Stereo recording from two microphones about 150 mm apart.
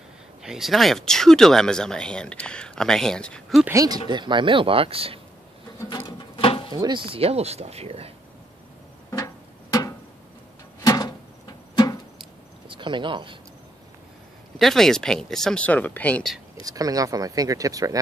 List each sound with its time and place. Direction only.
0.4 s speech: centre (ahead or behind)
3.6 s speech: 20° right (ahead or behind); by 5.2 s 40° right (ahead or behind)
5.9 s a sound: 30° left (ahead or behind)
6.7 s speech: 30° right (ahead or behind)
9.1 s tick-tock: 20° left (ahead or behind)
10.8 s a sound: 25° left (ahead or behind)
12.6 s speech: 35° right (ahead or behind)
14.6 s speech: centre (ahead or behind)
16.6 s speech: 25° right (ahead or behind)